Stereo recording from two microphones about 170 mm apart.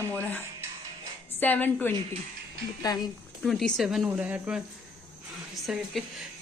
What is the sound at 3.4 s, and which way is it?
A woman's voice, centre (ahead or behind).